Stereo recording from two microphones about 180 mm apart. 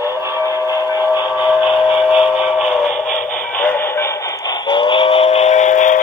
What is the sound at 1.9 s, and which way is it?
Music, 5° right (ahead or behind).